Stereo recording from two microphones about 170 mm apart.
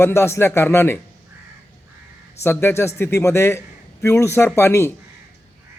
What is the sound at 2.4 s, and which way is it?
A man's voice, 15° left (ahead or behind).